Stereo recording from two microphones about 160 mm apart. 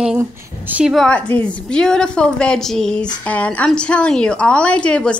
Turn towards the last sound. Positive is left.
turn(degrees=5)  # may be behind; listen again after turning